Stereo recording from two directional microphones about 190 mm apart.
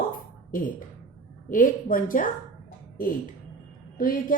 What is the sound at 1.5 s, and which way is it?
Speech, 45° left (ahead or behind).